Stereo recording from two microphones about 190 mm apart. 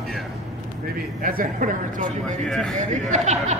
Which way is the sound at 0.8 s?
50° right (ahead or behind).